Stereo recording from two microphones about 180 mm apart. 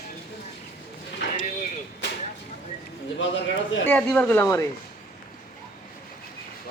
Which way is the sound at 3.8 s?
5° left (ahead or behind).